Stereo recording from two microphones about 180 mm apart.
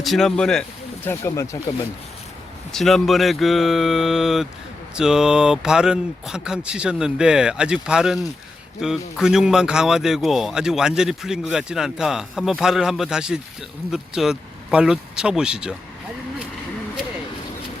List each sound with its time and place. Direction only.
0.0 s speech: centre (ahead or behind)
1.0 s speech: 15° left (ahead or behind)
2.7 s speech: centre (ahead or behind)